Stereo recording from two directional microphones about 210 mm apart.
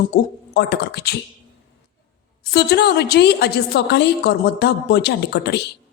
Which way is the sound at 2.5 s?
50° left (ahead or behind).